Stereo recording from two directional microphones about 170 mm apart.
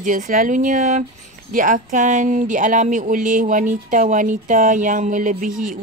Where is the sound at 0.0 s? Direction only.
50° right (ahead or behind).